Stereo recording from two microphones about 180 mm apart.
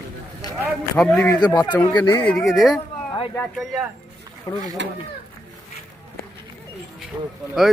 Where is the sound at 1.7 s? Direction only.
10° left (ahead or behind).